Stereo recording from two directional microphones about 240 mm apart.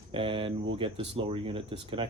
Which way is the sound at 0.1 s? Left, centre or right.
Right.